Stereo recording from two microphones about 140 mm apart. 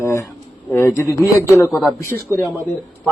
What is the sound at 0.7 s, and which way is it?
Speech, 20° left (ahead or behind).